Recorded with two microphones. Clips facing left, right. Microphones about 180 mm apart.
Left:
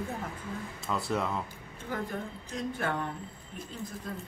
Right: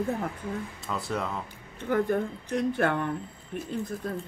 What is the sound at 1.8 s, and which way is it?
Speech, 65° right (ahead or behind).